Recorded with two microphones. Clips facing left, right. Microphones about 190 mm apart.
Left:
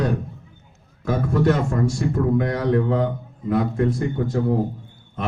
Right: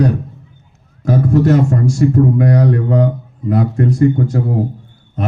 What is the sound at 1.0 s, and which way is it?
Speech, 40° right (ahead or behind).